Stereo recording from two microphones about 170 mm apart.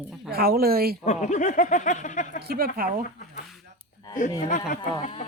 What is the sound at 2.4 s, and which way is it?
Speech, 65° right (ahead or behind).